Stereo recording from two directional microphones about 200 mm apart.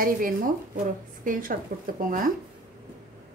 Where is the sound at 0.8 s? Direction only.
40° right (ahead or behind).